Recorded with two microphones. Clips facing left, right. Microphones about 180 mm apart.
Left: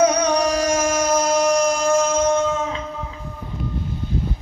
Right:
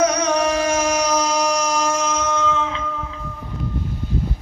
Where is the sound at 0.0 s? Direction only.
30° left (ahead or behind).